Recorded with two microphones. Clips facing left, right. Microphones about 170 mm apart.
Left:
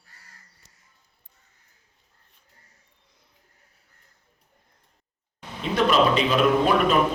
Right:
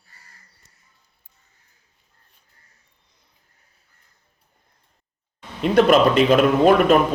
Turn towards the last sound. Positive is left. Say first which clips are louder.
# right 5 dB
turn(degrees=-50)  # may be behind; listen again after turning